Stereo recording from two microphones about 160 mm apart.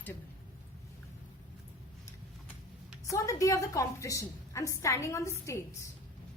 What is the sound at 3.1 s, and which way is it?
A woman's voice, 20° left (ahead or behind).